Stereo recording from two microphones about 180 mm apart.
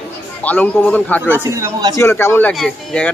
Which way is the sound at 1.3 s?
15° right (ahead or behind).